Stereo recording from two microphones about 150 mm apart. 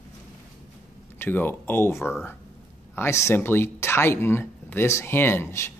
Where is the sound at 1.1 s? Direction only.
15° left (ahead or behind).